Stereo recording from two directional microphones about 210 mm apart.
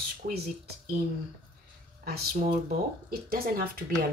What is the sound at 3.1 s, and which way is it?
Speech, 45° right (ahead or behind).